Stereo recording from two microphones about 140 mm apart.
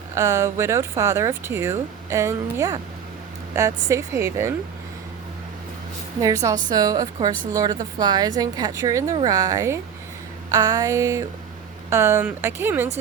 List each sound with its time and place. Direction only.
0.1 s speech: 20° right (ahead or behind)
6.1 s speech: 25° right (ahead or behind)